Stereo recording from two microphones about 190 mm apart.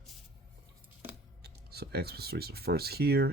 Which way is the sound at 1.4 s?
55° right (ahead or behind).